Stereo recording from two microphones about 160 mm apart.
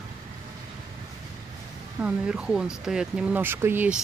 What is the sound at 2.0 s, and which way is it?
Mantra, 5° right (ahead or behind).